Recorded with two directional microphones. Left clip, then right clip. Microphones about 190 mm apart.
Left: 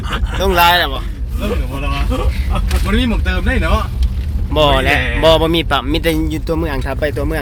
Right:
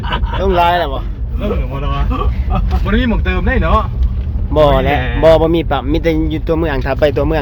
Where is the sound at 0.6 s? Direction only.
10° right (ahead or behind).